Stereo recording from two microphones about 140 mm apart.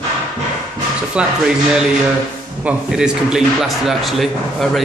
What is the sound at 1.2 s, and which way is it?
Speech, 5° right (ahead or behind).